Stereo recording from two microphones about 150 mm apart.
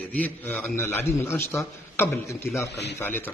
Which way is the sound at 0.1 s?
10° left (ahead or behind).